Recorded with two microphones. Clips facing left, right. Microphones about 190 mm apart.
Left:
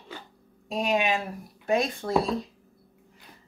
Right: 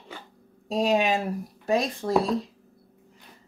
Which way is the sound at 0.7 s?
35° right (ahead or behind).